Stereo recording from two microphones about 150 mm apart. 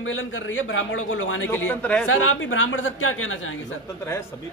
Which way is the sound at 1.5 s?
10° left (ahead or behind).